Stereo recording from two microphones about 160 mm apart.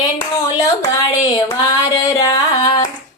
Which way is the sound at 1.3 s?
20° left (ahead or behind).